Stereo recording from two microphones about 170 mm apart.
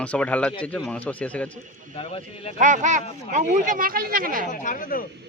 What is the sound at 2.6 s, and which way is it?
Speech, 45° right (ahead or behind).